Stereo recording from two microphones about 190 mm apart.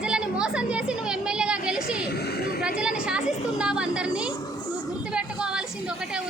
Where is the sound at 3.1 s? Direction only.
5° right (ahead or behind).